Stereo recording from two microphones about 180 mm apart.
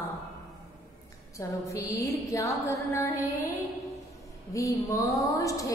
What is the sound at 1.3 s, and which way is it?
A woman's voice, 15° left (ahead or behind).